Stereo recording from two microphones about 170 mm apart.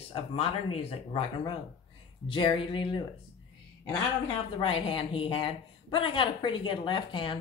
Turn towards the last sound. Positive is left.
turn(degrees=30)  # may be behind; listen again after turning